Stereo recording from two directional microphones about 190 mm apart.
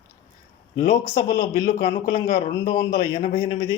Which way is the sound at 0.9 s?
40° left (ahead or behind).